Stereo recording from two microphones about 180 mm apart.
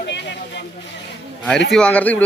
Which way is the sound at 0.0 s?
70° left (ahead or behind).